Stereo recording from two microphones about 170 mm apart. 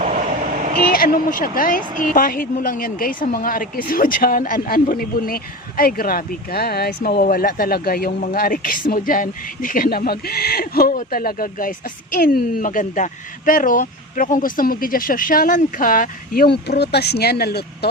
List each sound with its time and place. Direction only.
0.0 s vehicle: 45° right (ahead or behind)
0.9 s a woman's voice: 55° left (ahead or behind)